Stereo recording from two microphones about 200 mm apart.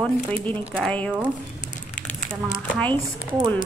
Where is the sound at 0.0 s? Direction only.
10° left (ahead or behind).